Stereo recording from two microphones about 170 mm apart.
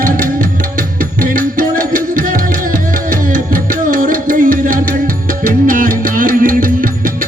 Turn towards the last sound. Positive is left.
turn(degrees=-55)  # may be behind; listen again after turning